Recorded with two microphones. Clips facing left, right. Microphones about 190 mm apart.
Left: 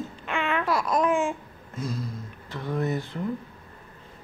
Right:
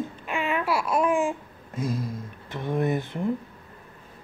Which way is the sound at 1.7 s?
90° right.